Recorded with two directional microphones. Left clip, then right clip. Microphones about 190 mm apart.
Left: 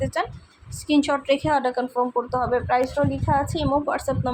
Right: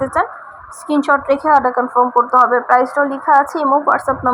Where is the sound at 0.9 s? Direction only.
15° right (ahead or behind).